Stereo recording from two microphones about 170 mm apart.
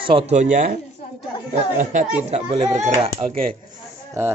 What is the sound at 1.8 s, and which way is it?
Speech, 45° right (ahead or behind).